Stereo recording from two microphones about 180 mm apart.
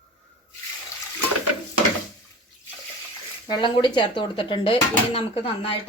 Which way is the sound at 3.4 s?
25° left (ahead or behind).